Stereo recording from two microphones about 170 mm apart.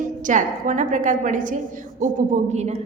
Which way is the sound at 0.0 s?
50° right (ahead or behind).